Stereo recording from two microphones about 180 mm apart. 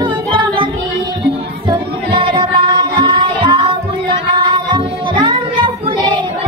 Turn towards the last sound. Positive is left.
turn(degrees=-25)  # may be behind; listen again after turning